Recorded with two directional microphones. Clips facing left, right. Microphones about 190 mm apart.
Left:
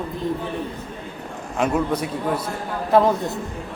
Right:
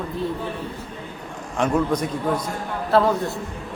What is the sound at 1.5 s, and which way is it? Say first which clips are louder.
Speech: right 1 dB; 5° left (ahead or behind).